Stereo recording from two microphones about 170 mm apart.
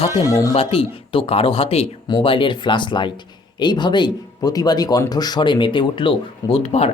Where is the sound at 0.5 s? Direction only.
35° left (ahead or behind).